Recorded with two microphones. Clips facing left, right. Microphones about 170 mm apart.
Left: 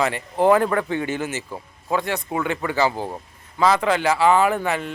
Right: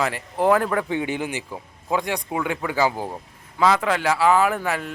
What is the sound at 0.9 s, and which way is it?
A man's voice, 15° right (ahead or behind).